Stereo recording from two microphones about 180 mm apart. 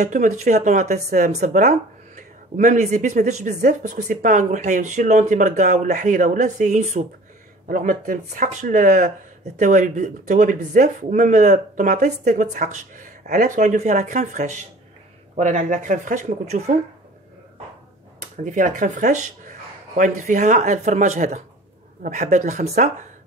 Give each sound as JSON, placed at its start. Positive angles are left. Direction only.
{"t": 0.0, "sound": "speech", "side_deg": -40}
{"t": 18.3, "sound": "speech", "side_deg": -45}